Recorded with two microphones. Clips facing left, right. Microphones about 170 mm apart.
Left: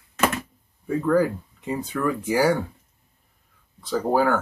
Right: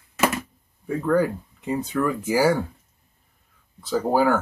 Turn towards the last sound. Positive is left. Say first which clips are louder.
# right 1 dB
turn(degrees=-5)  # may be behind; listen again after turning